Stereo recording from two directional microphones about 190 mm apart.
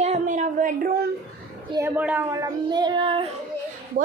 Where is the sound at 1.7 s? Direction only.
10° right (ahead or behind); by 3.2 s 25° right (ahead or behind).